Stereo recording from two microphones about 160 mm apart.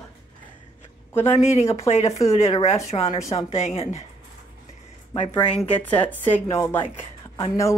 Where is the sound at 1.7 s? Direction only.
40° left (ahead or behind).